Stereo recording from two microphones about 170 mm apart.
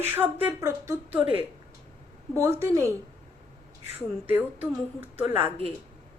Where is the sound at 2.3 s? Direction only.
15° right (ahead or behind).